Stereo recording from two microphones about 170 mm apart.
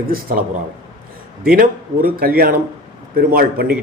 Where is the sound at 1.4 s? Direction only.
60° right (ahead or behind).